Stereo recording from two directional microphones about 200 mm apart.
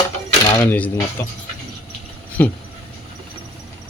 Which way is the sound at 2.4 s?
10° left (ahead or behind).